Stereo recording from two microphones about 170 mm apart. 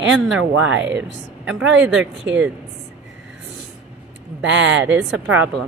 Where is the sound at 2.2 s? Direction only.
90° right.